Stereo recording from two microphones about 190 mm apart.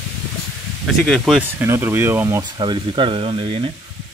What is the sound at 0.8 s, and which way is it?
Speech, centre (ahead or behind).